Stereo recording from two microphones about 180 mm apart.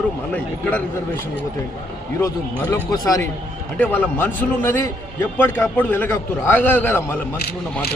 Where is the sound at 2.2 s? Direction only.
20° left (ahead or behind).